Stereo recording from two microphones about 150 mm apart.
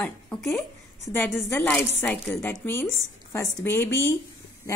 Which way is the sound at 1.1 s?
15° left (ahead or behind).